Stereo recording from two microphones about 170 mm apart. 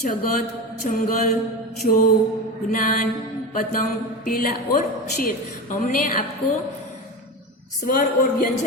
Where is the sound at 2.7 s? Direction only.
50° left (ahead or behind).